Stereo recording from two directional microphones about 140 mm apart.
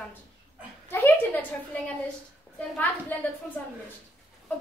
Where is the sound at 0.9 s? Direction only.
15° left (ahead or behind).